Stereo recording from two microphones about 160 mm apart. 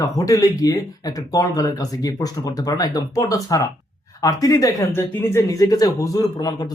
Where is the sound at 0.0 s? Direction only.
20° left (ahead or behind).